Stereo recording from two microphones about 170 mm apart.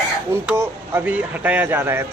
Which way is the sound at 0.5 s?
15° right (ahead or behind).